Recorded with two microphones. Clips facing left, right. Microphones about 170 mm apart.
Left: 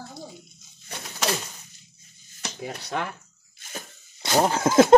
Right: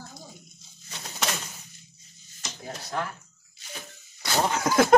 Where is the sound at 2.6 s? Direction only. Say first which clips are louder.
Left 2 dB; 70° left (ahead or behind).